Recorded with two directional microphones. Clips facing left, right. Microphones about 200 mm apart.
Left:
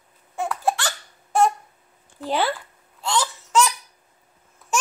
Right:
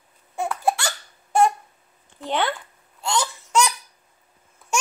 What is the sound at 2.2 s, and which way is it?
Babbling, 5° left (ahead or behind).